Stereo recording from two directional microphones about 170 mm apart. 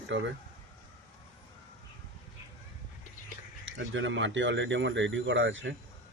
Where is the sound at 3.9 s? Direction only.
90° right.